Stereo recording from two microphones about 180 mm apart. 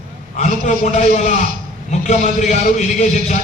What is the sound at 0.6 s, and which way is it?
A man's voice, 40° left (ahead or behind).